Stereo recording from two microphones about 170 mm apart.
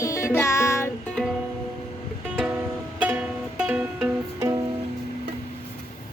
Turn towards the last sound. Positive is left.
turn(degrees=-20)  # may be behind; listen again after turning